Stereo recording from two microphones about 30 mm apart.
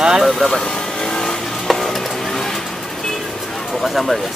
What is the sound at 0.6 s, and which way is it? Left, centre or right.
Vehicle, left.